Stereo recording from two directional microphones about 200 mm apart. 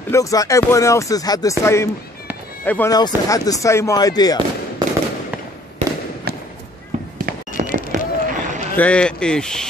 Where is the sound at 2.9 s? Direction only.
20° left (ahead or behind).